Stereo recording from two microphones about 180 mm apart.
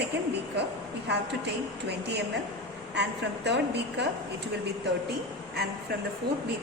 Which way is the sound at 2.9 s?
75° right (ahead or behind).